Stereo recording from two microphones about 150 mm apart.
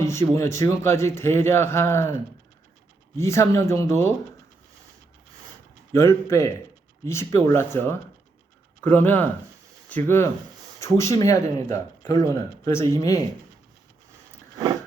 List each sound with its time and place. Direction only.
0.0 s a man's voice: 20° left (ahead or behind)
3.2 s speech: 20° left (ahead or behind)
5.9 s a man's voice: 20° left (ahead or behind)